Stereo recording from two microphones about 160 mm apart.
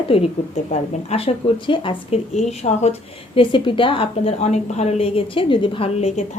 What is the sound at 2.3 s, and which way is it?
Speech, 45° left (ahead or behind).